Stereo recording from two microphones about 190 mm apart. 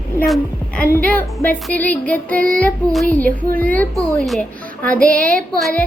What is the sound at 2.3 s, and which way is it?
Child singing, 45° right (ahead or behind).